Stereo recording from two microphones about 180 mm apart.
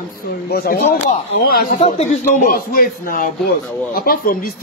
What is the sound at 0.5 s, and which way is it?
Speech, 60° left (ahead or behind).